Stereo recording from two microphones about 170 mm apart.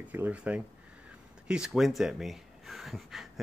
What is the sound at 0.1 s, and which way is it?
Speech, 10° right (ahead or behind).